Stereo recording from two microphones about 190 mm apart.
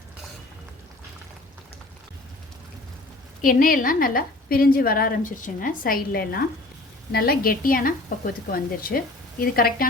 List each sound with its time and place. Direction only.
3.4 s a woman's voice: 45° left (ahead or behind)